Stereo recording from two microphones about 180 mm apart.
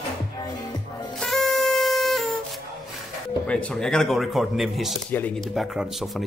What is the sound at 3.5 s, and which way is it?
Speech, 5° left (ahead or behind).